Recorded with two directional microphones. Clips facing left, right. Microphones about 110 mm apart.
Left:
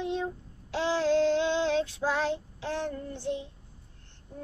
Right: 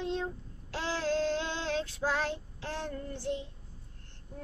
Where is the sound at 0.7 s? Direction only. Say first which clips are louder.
Left 6 dB; 20° left (ahead or behind).